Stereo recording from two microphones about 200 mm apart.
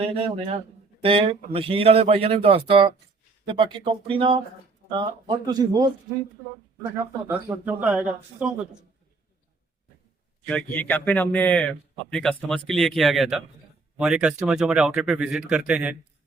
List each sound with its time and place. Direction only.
0.0 s a man's voice: 30° right (ahead or behind)
6.9 s speech: 10° right (ahead or behind)
10.4 s a man's voice: 5° left (ahead or behind)